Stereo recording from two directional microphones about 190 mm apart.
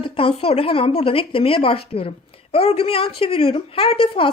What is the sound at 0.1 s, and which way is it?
Speech, 30° left (ahead or behind).